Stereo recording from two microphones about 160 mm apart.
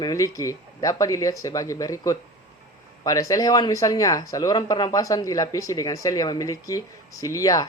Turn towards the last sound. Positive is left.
turn(degrees=20)  # may be behind; listen again after turning